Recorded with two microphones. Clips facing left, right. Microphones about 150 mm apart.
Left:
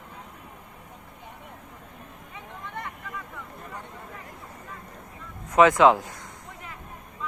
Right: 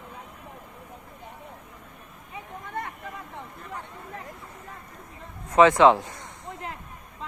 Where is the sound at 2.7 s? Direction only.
55° right (ahead or behind).